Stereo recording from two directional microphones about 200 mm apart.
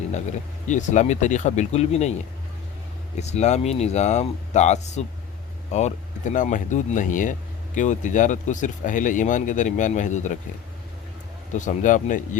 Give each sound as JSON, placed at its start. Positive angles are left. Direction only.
{"t": 0.1, "sound": "speech", "side_deg": 35}
{"t": 3.2, "sound": "speech", "side_deg": 35}
{"t": 11.5, "sound": "speech", "side_deg": 40}